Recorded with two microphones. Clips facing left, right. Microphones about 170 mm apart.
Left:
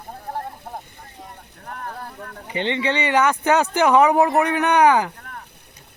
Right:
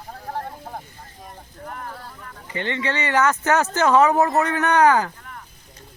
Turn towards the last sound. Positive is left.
turn(degrees=15)  # may be behind; listen again after turning